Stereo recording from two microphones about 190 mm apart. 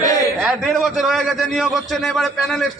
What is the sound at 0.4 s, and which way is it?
A man's voice, centre (ahead or behind).